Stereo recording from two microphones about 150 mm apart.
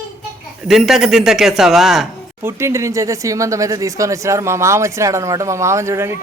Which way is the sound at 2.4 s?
20° right (ahead or behind).